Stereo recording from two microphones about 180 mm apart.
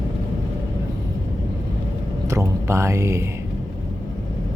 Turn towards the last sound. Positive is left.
turn(degrees=-15)  # may be behind; listen again after turning